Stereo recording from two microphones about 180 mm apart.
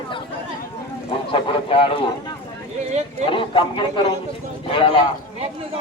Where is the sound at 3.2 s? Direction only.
30° left (ahead or behind).